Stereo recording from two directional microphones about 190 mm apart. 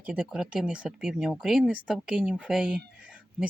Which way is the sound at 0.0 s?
5° right (ahead or behind).